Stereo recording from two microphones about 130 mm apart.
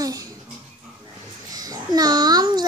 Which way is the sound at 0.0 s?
30° right (ahead or behind).